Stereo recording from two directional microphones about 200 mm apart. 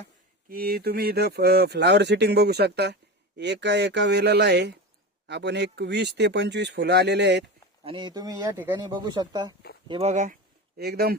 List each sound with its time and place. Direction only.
0.5 s speech: 50° right (ahead or behind)
7.9 s speech: 20° right (ahead or behind)
9.9 s speech: 30° right (ahead or behind)
10.8 s speech: 50° right (ahead or behind)